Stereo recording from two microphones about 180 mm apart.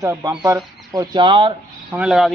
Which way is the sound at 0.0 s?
15° right (ahead or behind).